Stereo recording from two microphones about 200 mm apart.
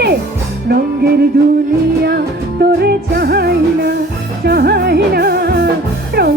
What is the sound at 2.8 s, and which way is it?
Music, 50° right (ahead or behind).